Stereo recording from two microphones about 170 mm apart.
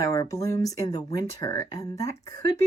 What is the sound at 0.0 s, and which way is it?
Speech, 20° left (ahead or behind).